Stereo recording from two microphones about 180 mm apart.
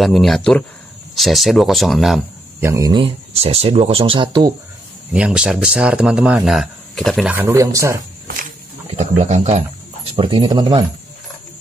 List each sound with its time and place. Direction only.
0.0 s speech: centre (ahead or behind)
2.6 s speech: 20° right (ahead or behind)
3.0 s speech: 30° right (ahead or behind)
5.1 s speech: 5° right (ahead or behind)
7.3 s speech: 15° right (ahead or behind)
8.9 s speech: 40° right (ahead or behind)